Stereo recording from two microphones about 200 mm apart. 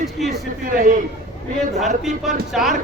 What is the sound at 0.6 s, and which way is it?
Speech, 40° right (ahead or behind).